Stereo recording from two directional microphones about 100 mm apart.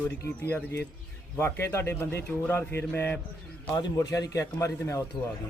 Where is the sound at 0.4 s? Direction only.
25° left (ahead or behind).